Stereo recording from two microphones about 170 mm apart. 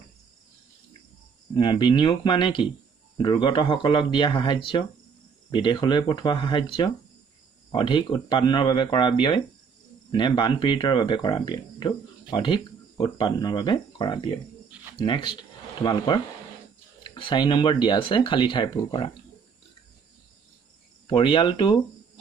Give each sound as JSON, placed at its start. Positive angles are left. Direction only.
{"t": 1.5, "sound": "speech", "side_deg": 30}
{"t": 7.7, "sound": "speech", "side_deg": 30}
{"t": 21.1, "sound": "speech", "side_deg": 30}